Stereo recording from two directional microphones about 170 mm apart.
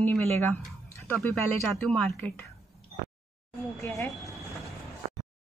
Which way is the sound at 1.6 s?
Centre (ahead or behind).